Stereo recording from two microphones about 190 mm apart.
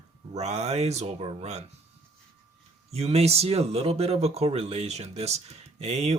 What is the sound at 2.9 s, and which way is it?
Speech, 35° right (ahead or behind).